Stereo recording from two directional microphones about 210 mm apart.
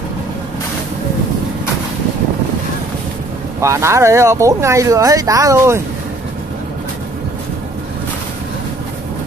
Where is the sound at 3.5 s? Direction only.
15° right (ahead or behind).